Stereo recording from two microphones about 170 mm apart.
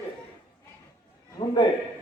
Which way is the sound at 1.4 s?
25° left (ahead or behind).